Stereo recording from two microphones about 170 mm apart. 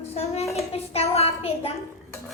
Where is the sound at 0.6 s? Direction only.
35° left (ahead or behind).